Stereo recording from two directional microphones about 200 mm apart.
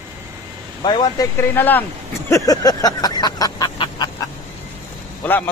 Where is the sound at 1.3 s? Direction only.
10° left (ahead or behind).